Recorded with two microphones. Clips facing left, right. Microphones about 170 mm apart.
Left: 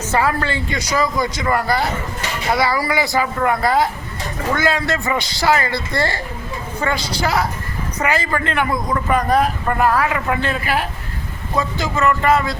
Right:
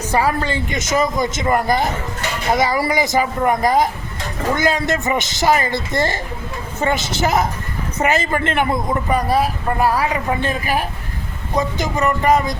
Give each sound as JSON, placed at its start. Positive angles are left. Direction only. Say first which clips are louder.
{"t": 0.0, "sound": "speech", "louder": "even", "side_deg": -15}
{"t": 8.9, "sound": "speech", "louder": "left 1 dB", "side_deg": -15}